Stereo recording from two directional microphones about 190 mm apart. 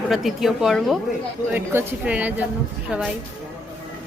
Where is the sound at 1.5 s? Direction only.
10° right (ahead or behind).